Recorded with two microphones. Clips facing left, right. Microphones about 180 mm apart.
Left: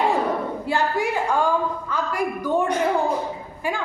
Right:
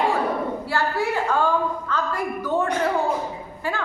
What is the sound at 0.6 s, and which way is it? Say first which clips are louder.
A woman's voice: left 1 dB; 20° left (ahead or behind).